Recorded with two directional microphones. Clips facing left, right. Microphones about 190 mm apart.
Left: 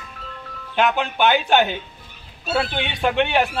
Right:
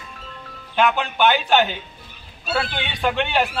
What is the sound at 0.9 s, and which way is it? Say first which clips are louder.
Speech: even; 15° left (ahead or behind).